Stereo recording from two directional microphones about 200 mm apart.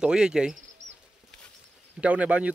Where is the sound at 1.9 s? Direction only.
5° right (ahead or behind).